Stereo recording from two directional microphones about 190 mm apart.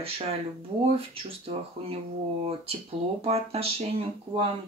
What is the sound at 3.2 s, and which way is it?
Speech, 30° right (ahead or behind).